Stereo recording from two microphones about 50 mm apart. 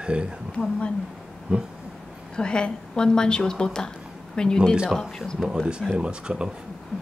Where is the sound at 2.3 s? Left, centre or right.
Centre.